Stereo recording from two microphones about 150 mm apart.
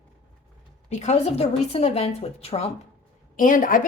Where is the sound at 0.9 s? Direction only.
50° left (ahead or behind).